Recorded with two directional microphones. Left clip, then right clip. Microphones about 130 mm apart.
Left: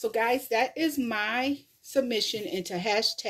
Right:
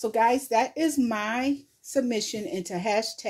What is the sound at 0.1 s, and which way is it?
A woman's voice, 35° right (ahead or behind).